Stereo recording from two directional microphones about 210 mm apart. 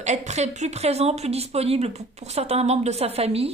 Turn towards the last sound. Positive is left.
turn(degrees=-30)  # may be behind; listen again after turning